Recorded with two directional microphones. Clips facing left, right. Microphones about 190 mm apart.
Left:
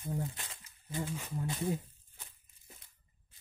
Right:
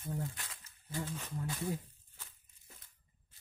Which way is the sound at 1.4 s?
20° left (ahead or behind).